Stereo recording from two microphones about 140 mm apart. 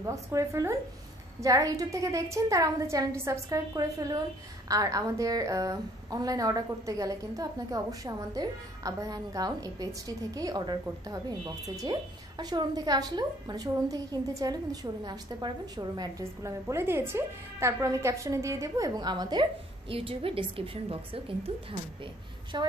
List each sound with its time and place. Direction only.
0.0 s a woman's voice: 20° right (ahead or behind)
19.9 s a woman's voice: 40° right (ahead or behind)
22.5 s a woman's voice: 30° right (ahead or behind)